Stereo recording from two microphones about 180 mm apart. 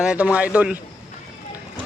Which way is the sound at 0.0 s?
5° right (ahead or behind).